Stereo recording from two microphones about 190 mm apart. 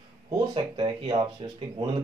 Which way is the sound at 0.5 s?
25° right (ahead or behind).